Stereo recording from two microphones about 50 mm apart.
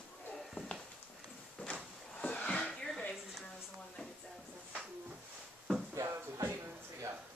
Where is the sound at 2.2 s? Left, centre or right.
Left.